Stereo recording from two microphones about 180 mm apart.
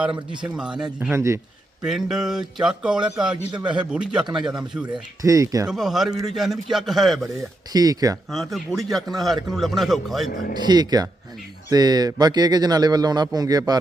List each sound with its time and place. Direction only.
0.0 s speech: 5° right (ahead or behind)
1.1 s speech: 15° right (ahead or behind)
1.8 s speech: centre (ahead or behind)
5.2 s speech: 20° right (ahead or behind)
5.6 s speech: centre (ahead or behind)
7.7 s speech: 20° right (ahead or behind)
8.3 s speech: centre (ahead or behind)
10.5 s speech: 25° right (ahead or behind)